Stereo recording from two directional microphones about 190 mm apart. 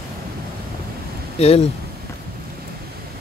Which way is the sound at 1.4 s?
30° left (ahead or behind).